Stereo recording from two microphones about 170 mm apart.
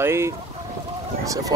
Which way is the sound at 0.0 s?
15° right (ahead or behind).